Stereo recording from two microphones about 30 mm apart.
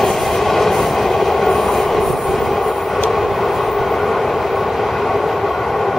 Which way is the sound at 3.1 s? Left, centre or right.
Centre.